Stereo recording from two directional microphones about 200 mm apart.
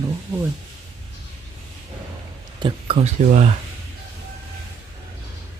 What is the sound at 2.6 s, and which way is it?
Speech, 25° right (ahead or behind).